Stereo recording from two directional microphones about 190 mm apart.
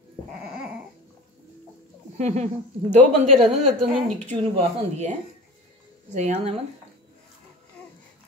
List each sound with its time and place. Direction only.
0.3 s dog: 5° right (ahead or behind)
2.1 s a woman's voice: 35° right (ahead or behind)
6.1 s a woman's voice: 35° right (ahead or behind)